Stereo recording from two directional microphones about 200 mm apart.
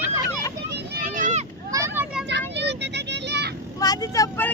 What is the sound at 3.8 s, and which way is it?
Vehicle, 20° left (ahead or behind).